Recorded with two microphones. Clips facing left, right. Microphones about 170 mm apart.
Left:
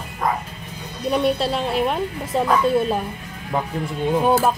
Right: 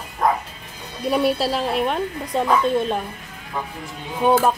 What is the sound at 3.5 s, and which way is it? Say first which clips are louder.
Speech: left 5 dB; 65° left (ahead or behind).